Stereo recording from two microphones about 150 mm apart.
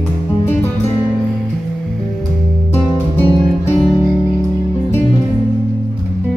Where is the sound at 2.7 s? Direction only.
15° left (ahead or behind).